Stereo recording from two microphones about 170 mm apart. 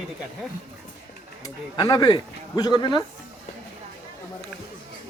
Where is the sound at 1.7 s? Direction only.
25° left (ahead or behind).